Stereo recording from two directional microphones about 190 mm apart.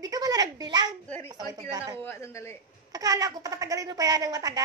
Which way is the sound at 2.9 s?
20° right (ahead or behind).